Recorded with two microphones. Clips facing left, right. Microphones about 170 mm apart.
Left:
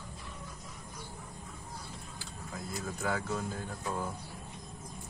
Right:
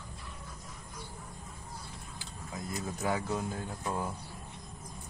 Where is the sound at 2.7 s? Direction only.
15° right (ahead or behind).